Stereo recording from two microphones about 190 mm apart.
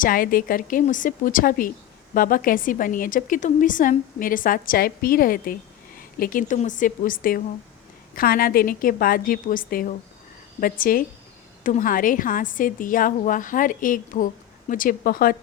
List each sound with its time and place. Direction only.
0.0 s a woman's voice: 50° left (ahead or behind)